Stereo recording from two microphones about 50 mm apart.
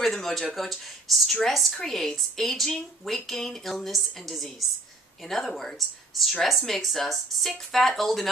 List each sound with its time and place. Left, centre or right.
0.0 s a woman's voice: centre